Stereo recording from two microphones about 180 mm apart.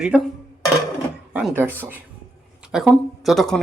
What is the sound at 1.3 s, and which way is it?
A woman's voice, 10° right (ahead or behind).